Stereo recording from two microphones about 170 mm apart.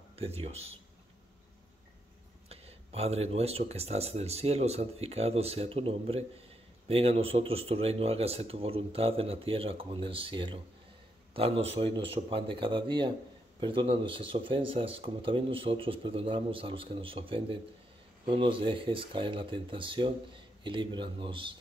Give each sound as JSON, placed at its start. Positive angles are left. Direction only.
{"t": 0.1, "sound": "speech", "side_deg": -35}
{"t": 2.5, "sound": "speech", "side_deg": -35}